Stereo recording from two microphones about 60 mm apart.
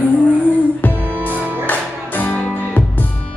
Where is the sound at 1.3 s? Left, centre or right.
Right.